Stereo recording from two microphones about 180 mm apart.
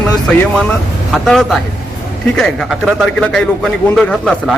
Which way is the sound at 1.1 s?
Centre (ahead or behind).